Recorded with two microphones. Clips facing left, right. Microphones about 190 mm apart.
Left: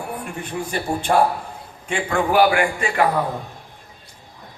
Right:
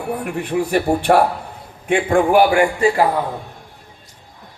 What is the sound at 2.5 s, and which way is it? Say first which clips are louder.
Speech: right 6 dB; 30° right (ahead or behind).